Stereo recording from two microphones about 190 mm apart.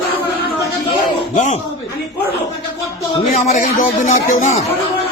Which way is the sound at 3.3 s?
35° left (ahead or behind).